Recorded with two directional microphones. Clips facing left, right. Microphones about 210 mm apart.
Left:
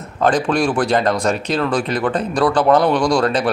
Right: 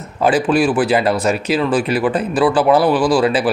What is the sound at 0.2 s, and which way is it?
A man's voice, 5° right (ahead or behind).